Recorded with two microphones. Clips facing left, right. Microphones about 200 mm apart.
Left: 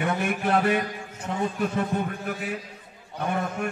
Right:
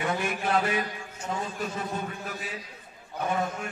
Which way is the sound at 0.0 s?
60° left (ahead or behind).